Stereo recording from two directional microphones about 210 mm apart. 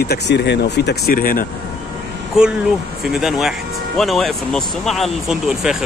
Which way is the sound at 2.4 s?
Centre (ahead or behind).